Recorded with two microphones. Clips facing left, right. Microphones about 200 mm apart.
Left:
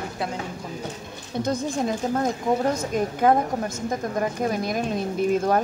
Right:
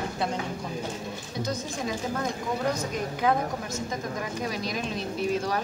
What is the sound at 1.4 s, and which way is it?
A woman's voice, 55° left (ahead or behind).